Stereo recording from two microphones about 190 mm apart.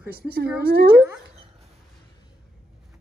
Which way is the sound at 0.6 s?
55° right (ahead or behind).